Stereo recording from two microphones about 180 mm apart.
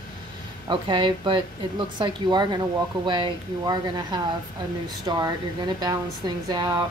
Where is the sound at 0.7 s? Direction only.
25° right (ahead or behind).